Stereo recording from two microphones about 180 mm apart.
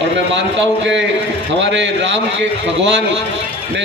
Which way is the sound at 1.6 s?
90° right.